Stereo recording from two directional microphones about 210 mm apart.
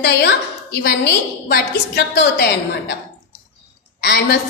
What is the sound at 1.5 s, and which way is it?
A woman's voice, 55° left (ahead or behind).